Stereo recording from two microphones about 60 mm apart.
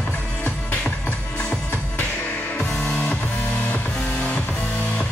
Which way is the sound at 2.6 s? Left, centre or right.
Centre.